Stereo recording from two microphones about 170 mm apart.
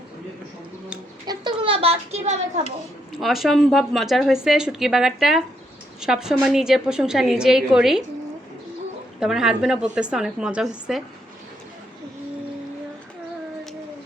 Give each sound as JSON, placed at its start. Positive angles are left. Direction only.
{"t": 1.3, "sound": "a sound", "side_deg": -30}
{"t": 3.1, "sound": "speech", "side_deg": 0}
{"t": 9.2, "sound": "speech", "side_deg": -5}